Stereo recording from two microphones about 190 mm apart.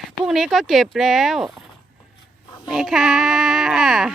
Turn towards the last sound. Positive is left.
turn(degrees=0)  # may be behind; listen again after turning